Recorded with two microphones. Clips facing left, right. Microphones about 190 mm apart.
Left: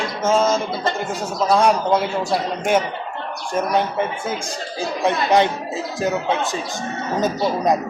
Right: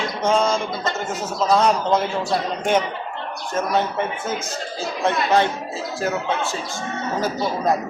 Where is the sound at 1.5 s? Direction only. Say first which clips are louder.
Left 1 dB; 10° left (ahead or behind).